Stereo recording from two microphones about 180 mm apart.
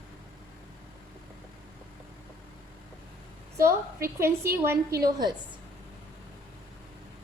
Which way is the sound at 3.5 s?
15° right (ahead or behind).